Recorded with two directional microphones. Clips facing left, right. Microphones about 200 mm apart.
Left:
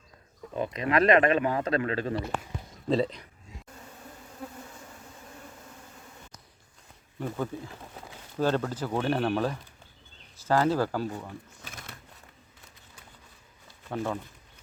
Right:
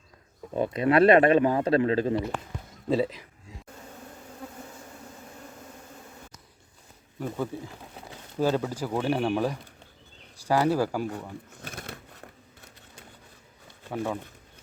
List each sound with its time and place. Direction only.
0.5 s speech: 30° right (ahead or behind)
2.9 s speech: 5° right (ahead or behind)
7.2 s speech: 10° right (ahead or behind)
11.8 s a sound: 60° right (ahead or behind)
13.9 s speech: 10° right (ahead or behind)